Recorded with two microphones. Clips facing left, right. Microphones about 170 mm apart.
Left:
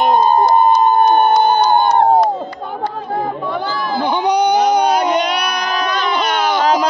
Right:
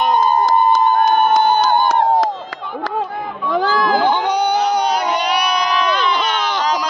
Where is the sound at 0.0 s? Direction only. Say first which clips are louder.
Left 3 dB; 30° left (ahead or behind).